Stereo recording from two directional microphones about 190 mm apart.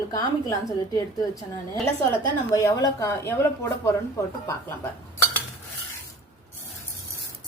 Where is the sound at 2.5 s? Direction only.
15° left (ahead or behind).